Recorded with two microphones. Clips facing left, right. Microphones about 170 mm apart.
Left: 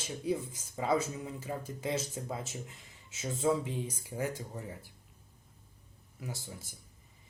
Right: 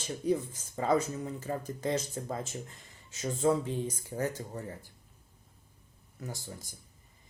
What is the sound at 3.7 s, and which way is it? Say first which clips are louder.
Speech: right 3 dB; 10° left (ahead or behind).